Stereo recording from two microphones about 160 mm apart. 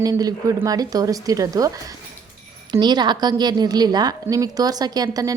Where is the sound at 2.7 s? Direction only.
25° right (ahead or behind).